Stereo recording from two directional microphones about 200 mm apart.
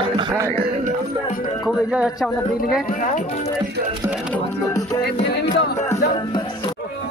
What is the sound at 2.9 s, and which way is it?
Speech, 40° left (ahead or behind).